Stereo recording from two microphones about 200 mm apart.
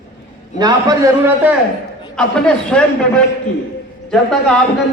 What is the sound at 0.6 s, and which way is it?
Speech, 15° right (ahead or behind).